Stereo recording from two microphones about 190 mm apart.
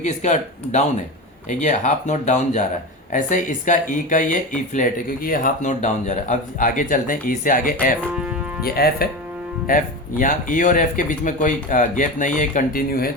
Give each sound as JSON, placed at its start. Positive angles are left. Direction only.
{"t": 0.0, "sound": "speech", "side_deg": 40}